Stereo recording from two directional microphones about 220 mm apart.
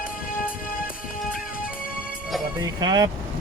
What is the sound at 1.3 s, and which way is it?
Music, 40° left (ahead or behind).